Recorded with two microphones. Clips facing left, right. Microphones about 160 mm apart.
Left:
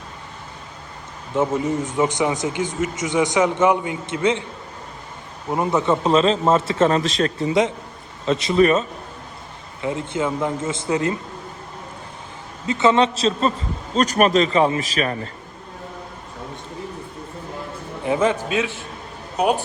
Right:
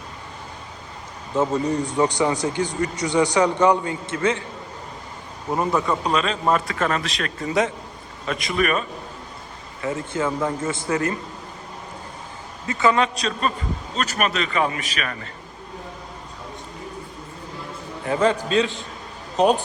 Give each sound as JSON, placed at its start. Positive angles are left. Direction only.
{"t": 1.4, "sound": "a man's voice", "side_deg": 20}
{"t": 5.5, "sound": "a man's voice", "side_deg": 20}
{"t": 9.8, "sound": "a man's voice", "side_deg": 15}
{"t": 12.6, "sound": "a man's voice", "side_deg": 20}
{"t": 13.9, "sound": "a man's voice", "side_deg": 40}
{"t": 18.0, "sound": "a man's voice", "side_deg": 15}